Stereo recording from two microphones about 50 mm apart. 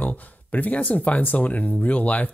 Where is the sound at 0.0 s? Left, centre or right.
Left.